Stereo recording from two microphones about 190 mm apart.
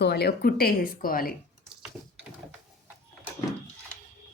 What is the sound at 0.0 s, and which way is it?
Speech, 55° left (ahead or behind).